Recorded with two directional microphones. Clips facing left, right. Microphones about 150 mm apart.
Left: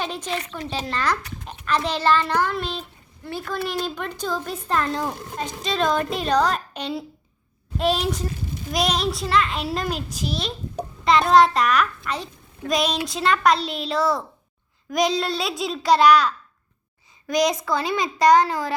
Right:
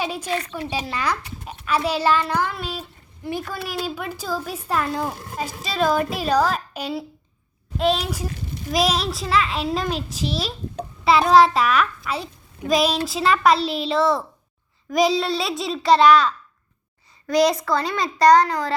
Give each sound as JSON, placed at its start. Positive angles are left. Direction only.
{"t": 0.0, "sound": "a woman's voice", "side_deg": -10}
{"t": 17.9, "sound": "a child's voice", "side_deg": 20}